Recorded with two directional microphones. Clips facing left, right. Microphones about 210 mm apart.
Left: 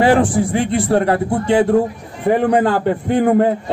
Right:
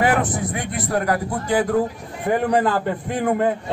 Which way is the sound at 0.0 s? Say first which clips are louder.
Left 7 dB; 30° left (ahead or behind).